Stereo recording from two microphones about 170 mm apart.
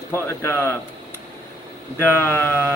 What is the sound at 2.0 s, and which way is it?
Speech, 10° left (ahead or behind).